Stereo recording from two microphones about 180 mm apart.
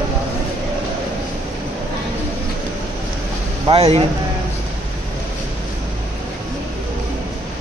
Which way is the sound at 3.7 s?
35° right (ahead or behind).